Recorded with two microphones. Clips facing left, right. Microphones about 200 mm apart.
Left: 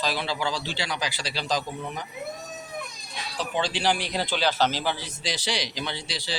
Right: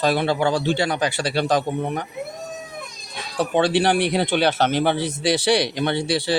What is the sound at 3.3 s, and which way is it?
Speech, 60° right (ahead or behind).